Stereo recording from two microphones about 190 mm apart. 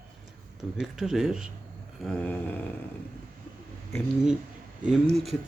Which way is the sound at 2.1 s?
5° left (ahead or behind).